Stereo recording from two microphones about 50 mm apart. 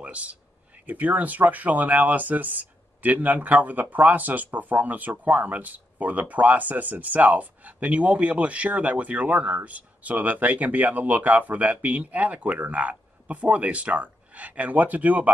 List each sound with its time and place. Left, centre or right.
0.0 s speech: right